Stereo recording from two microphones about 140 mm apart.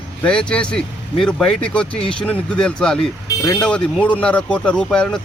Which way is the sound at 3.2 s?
25° left (ahead or behind).